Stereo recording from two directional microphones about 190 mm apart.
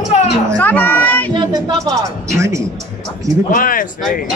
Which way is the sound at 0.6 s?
10° left (ahead or behind).